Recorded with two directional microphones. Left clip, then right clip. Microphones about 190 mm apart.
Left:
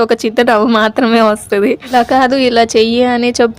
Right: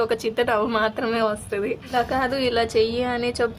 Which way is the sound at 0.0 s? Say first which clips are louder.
Left 11 dB; 40° left (ahead or behind).